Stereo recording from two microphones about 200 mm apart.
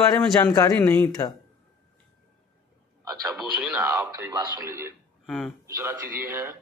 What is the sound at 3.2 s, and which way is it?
Speech, 5° right (ahead or behind).